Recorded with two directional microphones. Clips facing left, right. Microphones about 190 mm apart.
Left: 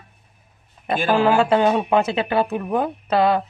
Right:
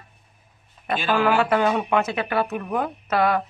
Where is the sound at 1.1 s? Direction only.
25° left (ahead or behind).